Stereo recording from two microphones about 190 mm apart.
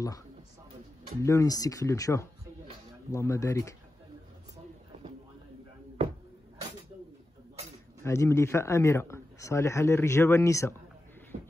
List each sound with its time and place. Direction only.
1.2 s a man's voice: 15° left (ahead or behind)
8.0 s a man's voice: 15° left (ahead or behind)
11.3 s shuffle: 50° right (ahead or behind)